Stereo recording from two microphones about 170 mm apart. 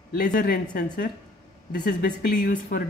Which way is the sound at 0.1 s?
55° left (ahead or behind).